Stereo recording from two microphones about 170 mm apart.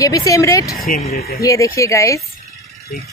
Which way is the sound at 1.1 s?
65° left (ahead or behind).